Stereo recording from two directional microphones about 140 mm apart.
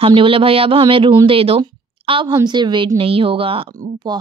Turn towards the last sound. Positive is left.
turn(degrees=-40)  # may be behind; listen again after turning